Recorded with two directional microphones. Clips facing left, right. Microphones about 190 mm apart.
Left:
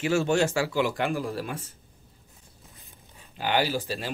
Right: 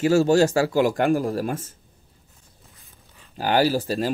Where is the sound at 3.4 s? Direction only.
40° right (ahead or behind).